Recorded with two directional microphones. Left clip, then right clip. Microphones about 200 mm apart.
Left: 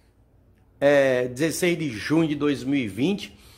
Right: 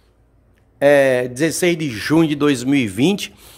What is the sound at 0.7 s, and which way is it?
Speech, 10° right (ahead or behind).